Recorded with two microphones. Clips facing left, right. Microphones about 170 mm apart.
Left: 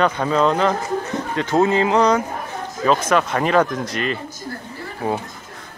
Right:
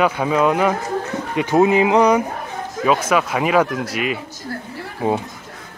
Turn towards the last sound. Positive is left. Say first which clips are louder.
# right 3 dB
turn(degrees=-25)  # may be behind; listen again after turning